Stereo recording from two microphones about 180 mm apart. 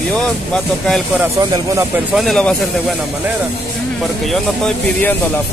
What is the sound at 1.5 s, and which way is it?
Speech, 15° right (ahead or behind).